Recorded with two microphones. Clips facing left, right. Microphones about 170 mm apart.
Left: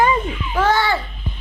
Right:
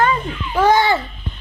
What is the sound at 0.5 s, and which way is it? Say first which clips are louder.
Babbling: right 4 dB; 15° right (ahead or behind).